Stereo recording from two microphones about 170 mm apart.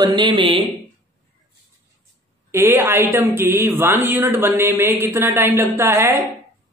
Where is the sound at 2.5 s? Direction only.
15° right (ahead or behind).